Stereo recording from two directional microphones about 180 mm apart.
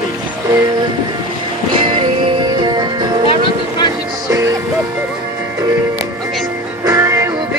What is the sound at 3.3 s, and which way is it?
Music, 25° left (ahead or behind).